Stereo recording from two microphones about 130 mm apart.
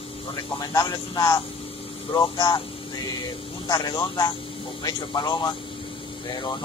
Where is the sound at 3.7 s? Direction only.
30° left (ahead or behind).